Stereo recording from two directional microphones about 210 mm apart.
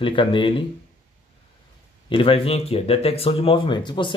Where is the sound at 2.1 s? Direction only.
25° left (ahead or behind).